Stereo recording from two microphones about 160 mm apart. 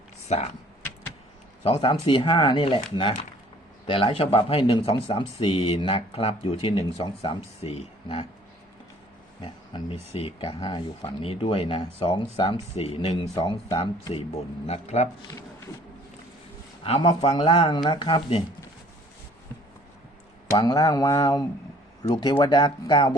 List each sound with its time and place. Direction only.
0.3 s speech: 40° left (ahead or behind)
1.6 s speech: 35° left (ahead or behind)
9.4 s speech: 35° left (ahead or behind)
14.7 s speech: 45° left (ahead or behind)
16.8 s speech: 35° left (ahead or behind)
20.6 s speech: 25° left (ahead or behind)